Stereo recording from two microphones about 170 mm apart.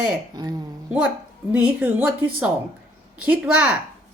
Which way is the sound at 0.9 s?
5° right (ahead or behind).